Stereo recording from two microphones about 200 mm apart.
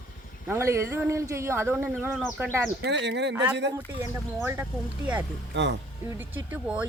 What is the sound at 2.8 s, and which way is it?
Speech, 60° right (ahead or behind).